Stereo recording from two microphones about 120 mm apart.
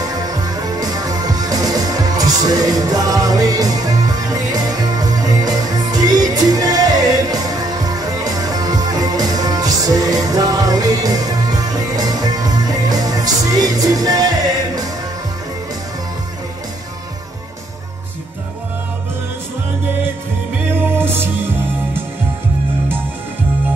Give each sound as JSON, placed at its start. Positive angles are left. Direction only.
{"t": 0.3, "sound": "music", "side_deg": -30}
{"t": 20.7, "sound": "music", "side_deg": -15}